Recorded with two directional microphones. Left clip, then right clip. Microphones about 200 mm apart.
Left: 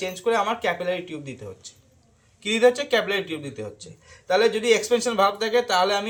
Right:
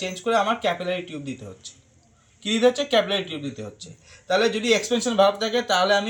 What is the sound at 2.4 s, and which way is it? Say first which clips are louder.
Speech: left 1 dB; 20° left (ahead or behind).